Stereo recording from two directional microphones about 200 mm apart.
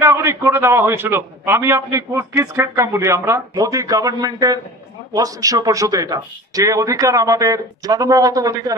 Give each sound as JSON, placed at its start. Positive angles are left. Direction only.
{"t": 0.0, "sound": "a man's voice", "side_deg": -15}